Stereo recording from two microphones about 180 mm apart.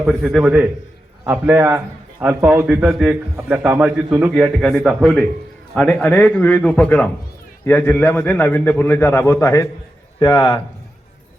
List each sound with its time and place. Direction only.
0.0 s a man's voice: 5° right (ahead or behind); by 10.6 s 20° left (ahead or behind)